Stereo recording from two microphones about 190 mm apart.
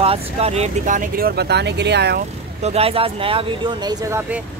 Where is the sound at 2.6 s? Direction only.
30° right (ahead or behind).